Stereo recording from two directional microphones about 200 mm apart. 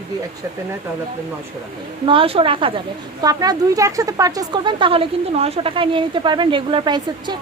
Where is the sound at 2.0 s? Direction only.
25° right (ahead or behind).